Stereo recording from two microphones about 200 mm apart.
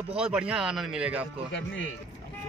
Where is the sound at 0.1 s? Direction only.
5° right (ahead or behind).